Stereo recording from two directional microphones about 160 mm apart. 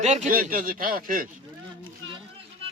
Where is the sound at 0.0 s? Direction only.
45° right (ahead or behind); by 1.3 s 60° right (ahead or behind).